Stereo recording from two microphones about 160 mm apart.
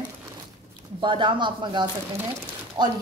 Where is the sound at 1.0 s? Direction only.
30° right (ahead or behind).